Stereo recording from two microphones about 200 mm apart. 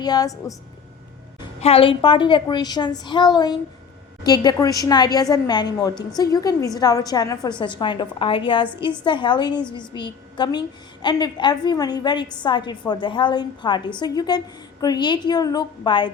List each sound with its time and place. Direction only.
0.0 s a woman's voice: 20° left (ahead or behind)
1.6 s a woman's voice: 30° left (ahead or behind)